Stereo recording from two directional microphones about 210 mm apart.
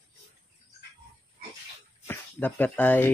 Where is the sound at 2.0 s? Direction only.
10° left (ahead or behind).